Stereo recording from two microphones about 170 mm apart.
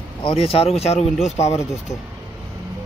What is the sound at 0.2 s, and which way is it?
Speech, 35° left (ahead or behind).